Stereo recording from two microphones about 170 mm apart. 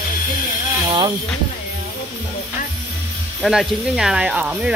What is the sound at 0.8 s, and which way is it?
Speech, 25° right (ahead or behind).